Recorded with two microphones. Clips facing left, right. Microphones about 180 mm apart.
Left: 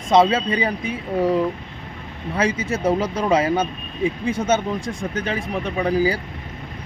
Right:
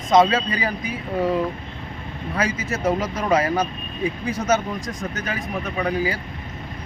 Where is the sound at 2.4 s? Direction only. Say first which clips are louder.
Left 3 dB; 30° left (ahead or behind).